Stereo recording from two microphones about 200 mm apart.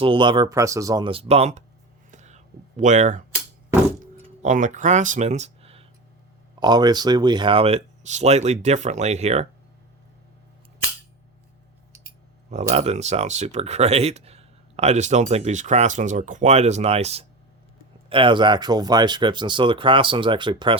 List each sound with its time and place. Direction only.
0.0 s speech: 25° right (ahead or behind)
2.0 s whispering: 35° right (ahead or behind)
4.0 s a sound: 40° right (ahead or behind)
6.6 s speech: 20° right (ahead or behind)
12.5 s speech: 35° right (ahead or behind)